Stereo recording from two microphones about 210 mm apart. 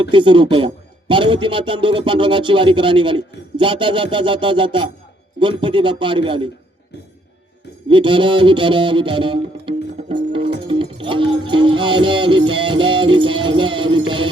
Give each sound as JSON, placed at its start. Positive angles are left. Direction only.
{"t": 0.0, "sound": "speech", "side_deg": -25}
{"t": 7.9, "sound": "speech", "side_deg": -25}